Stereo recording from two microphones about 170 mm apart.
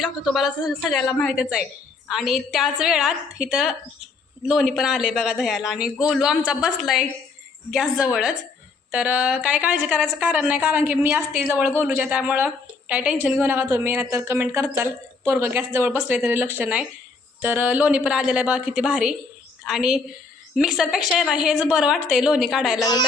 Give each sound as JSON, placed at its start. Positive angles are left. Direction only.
{"t": 0.0, "sound": "a woman's voice", "side_deg": 0}
{"t": 22.8, "sound": "a woman's voice", "side_deg": 25}